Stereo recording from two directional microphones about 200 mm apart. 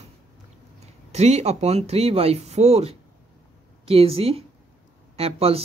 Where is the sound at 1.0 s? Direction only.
35° right (ahead or behind).